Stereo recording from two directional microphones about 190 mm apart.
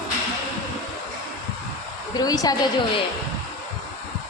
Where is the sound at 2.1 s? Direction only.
20° left (ahead or behind).